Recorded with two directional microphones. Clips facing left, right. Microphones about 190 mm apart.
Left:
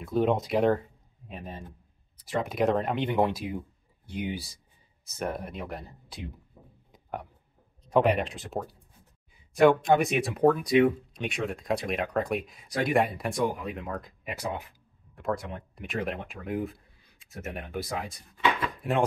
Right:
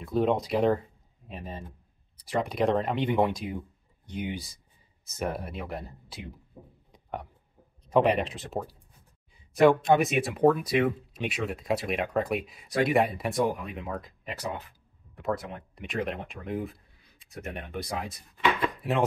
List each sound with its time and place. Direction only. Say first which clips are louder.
0.0 s speech: even; centre (ahead or behind)
5.0 s speech: right 1 dB; 5° right (ahead or behind)
6.5 s speech: right 5 dB; 30° right (ahead or behind)
6.9 s a sound: even; centre (ahead or behind)
7.9 s speech: even; centre (ahead or behind)
14.2 s speech: left 3 dB; 10° left (ahead or behind)
15.1 s speech: even; centre (ahead or behind)
18.8 s chopping: even; centre (ahead or behind)